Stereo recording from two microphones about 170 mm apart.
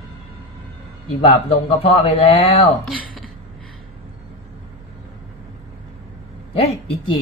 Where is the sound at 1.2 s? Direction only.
35° left (ahead or behind).